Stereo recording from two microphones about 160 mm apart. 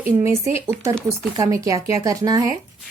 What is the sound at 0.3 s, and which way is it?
Speech, 40° left (ahead or behind).